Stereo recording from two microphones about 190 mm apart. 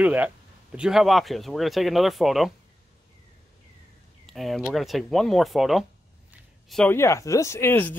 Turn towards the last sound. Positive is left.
turn(degrees=10)  # may be behind; listen again after turning